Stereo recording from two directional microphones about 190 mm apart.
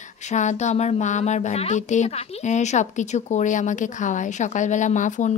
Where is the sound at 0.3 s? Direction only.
40° left (ahead or behind).